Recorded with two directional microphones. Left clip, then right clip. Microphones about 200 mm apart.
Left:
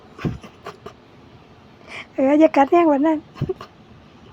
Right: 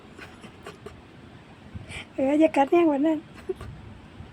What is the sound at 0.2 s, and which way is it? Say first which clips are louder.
Pant: left 13 dB; 10° left (ahead or behind).